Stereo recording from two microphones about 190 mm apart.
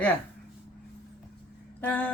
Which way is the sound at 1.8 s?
10° left (ahead or behind).